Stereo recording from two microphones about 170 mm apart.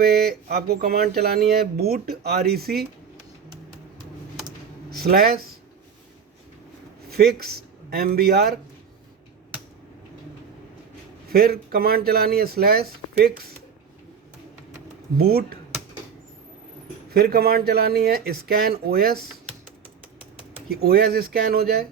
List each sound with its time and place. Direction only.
0.0 s speech: 65° right (ahead or behind)
4.9 s speech: 65° right (ahead or behind)
7.1 s a man's voice: 65° right (ahead or behind)
11.3 s speech: 65° right (ahead or behind)
15.2 s speech: 65° right (ahead or behind)
17.1 s speech: 65° right (ahead or behind)
20.7 s speech: 65° right (ahead or behind)